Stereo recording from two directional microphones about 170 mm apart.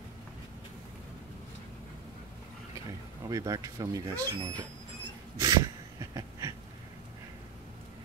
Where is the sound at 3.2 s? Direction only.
20° right (ahead or behind).